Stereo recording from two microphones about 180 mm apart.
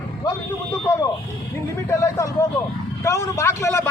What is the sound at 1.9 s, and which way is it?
Speech, 15° left (ahead or behind).